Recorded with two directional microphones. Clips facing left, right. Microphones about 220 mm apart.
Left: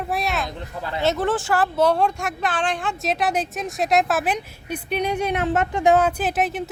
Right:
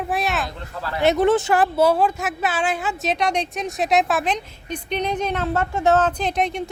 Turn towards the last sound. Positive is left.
turn(degrees=5)  # may be behind; listen again after turning